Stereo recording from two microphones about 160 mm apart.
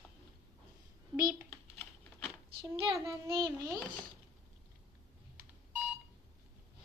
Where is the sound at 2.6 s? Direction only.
20° right (ahead or behind).